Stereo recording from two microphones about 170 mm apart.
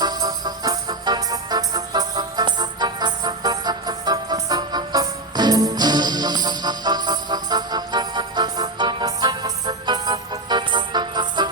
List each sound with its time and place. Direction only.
0.0 s music: 25° right (ahead or behind)